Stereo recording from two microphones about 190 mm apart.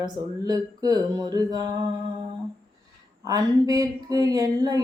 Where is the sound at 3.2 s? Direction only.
20° right (ahead or behind).